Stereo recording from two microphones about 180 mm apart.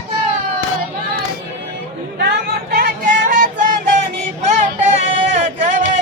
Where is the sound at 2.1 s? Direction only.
65° right (ahead or behind); by 3.5 s 45° right (ahead or behind).